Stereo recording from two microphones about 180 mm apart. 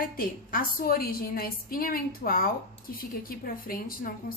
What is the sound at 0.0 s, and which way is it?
A woman's voice, 55° left (ahead or behind).